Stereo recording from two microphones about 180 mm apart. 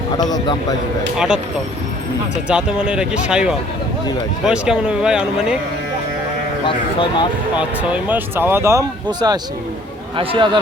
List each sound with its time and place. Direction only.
0.2 s a man's voice: 20° left (ahead or behind)
1.1 s speech: 5° right (ahead or behind)
2.5 s speech: 5° right (ahead or behind)
7.5 s speech: 5° right (ahead or behind); by 10.6 s 25° right (ahead or behind)